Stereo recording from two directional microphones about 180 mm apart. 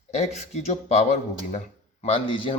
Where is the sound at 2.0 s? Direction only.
30° left (ahead or behind).